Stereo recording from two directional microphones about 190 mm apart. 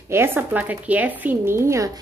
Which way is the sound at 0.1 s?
10° right (ahead or behind).